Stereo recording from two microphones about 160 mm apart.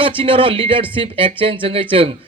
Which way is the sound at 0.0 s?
35° right (ahead or behind).